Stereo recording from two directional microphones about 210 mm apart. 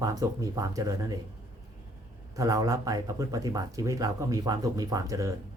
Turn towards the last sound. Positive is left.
turn(degrees=-15)  # may be behind; listen again after turning